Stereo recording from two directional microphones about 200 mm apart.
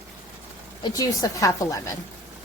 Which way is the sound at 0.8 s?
15° left (ahead or behind).